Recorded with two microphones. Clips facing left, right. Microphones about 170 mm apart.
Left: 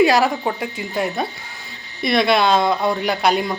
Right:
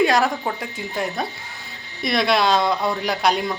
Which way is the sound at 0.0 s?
5° left (ahead or behind).